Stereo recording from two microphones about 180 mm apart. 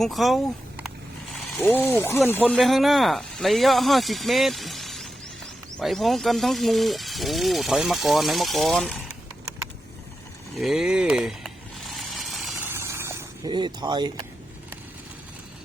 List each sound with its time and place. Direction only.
0.0 s speech: centre (ahead or behind)
1.6 s speech: 10° left (ahead or behind)
10.6 s vehicle: centre (ahead or behind)
12.6 s a sound: 15° right (ahead or behind)
13.5 s speech: 25° right (ahead or behind)